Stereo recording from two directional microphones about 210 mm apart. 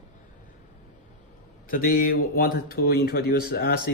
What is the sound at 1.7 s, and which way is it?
A man's voice, 40° left (ahead or behind).